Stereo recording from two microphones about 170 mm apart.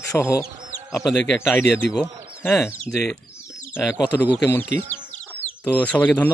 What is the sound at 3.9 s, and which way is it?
Speech, 15° left (ahead or behind).